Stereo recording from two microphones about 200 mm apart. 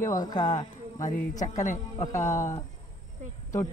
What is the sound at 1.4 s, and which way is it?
A man's voice, 35° left (ahead or behind).